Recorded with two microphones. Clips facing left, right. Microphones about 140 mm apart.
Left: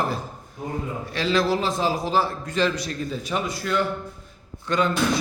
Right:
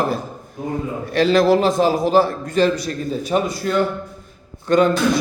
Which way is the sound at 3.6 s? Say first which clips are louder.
Right 5 dB; 40° right (ahead or behind).